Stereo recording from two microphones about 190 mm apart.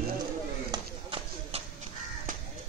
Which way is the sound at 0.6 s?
25° right (ahead or behind).